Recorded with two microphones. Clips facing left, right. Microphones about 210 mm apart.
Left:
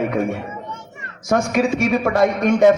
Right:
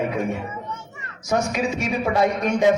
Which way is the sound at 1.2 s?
50° left (ahead or behind).